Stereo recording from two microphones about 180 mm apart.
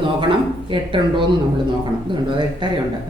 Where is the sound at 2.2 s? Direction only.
25° right (ahead or behind).